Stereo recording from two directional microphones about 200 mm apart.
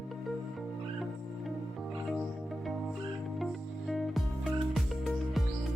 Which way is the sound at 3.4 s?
Centre (ahead or behind).